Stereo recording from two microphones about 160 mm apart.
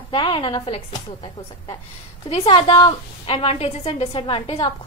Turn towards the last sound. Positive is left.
turn(degrees=35)  # may be behind; listen again after turning